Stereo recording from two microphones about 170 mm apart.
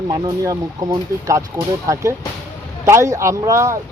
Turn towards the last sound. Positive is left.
turn(degrees=-15)  # may be behind; listen again after turning